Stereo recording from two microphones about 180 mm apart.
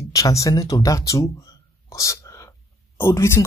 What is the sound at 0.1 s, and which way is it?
Speech, 20° left (ahead or behind).